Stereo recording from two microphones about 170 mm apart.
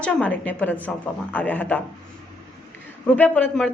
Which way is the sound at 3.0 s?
10° left (ahead or behind).